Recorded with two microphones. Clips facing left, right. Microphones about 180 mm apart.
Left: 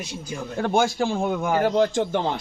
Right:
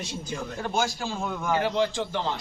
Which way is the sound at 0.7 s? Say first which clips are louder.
Left 7 dB; 60° left (ahead or behind).